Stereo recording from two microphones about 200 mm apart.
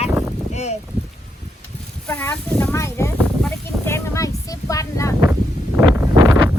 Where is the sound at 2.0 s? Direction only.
10° left (ahead or behind).